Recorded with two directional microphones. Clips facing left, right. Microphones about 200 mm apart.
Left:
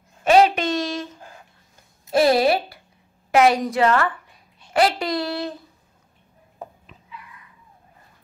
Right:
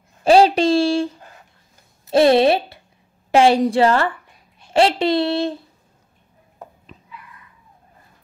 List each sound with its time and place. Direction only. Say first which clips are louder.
0.2 s a woman's voice: right 3 dB; 30° right (ahead or behind)